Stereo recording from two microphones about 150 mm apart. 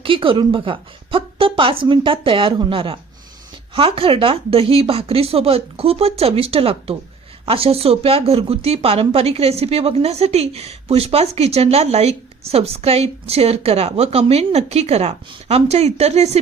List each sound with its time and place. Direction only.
0.0 s speech: 35° right (ahead or behind)